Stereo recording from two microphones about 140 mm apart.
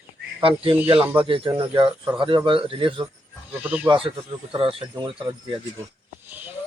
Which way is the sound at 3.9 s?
35° right (ahead or behind).